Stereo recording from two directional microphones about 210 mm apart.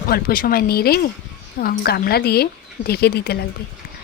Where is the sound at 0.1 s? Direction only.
45° left (ahead or behind).